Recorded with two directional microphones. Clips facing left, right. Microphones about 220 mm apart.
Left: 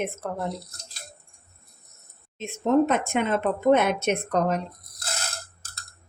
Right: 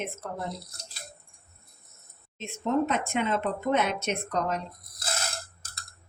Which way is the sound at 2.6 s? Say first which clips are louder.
Left 6 dB; 50° left (ahead or behind).